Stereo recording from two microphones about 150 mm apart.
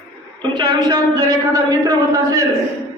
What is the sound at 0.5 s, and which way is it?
A man's voice, 30° right (ahead or behind).